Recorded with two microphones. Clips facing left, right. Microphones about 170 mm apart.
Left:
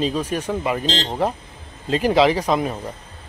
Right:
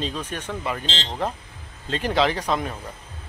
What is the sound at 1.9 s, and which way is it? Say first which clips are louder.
Speech: left 6 dB; 10° left (ahead or behind).